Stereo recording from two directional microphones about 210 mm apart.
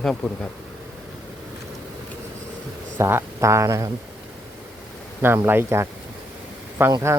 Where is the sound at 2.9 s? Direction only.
10° right (ahead or behind).